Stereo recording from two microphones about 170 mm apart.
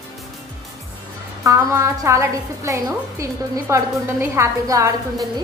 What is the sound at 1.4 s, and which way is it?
A woman's voice, 15° right (ahead or behind).